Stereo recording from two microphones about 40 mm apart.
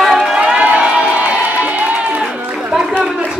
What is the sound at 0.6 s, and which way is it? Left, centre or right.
Crowd, right.